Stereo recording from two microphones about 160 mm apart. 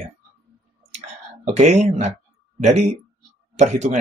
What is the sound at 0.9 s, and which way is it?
Clicking, 45° right (ahead or behind).